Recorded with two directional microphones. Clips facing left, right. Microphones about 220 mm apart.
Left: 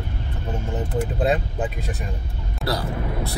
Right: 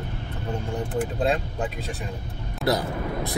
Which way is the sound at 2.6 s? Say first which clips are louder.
Right 2 dB; 20° right (ahead or behind).